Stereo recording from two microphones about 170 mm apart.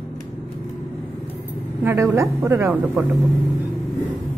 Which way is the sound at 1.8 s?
20° right (ahead or behind).